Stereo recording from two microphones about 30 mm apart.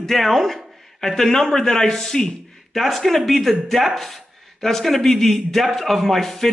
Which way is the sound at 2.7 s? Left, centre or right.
Centre.